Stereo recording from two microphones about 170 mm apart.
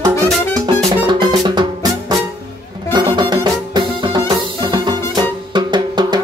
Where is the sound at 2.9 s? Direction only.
25° right (ahead or behind).